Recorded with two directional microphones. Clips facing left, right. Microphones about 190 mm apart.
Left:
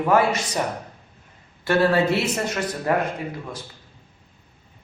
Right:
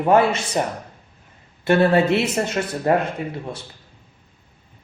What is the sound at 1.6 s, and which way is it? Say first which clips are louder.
A man's voice: right 3 dB; 20° right (ahead or behind).